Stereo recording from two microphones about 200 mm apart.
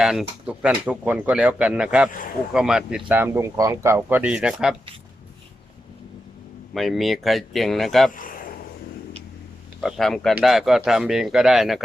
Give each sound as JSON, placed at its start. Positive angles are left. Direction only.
{"t": 0.0, "sound": "speech", "side_deg": 0}
{"t": 6.7, "sound": "speech", "side_deg": 0}
{"t": 8.1, "sound": "a sound", "side_deg": 45}
{"t": 9.8, "sound": "speech", "side_deg": 0}